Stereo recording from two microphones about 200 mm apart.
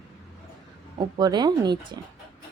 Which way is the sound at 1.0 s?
20° right (ahead or behind).